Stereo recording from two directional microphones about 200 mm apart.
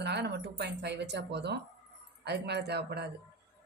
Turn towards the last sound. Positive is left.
turn(degrees=-55)  # may be behind; listen again after turning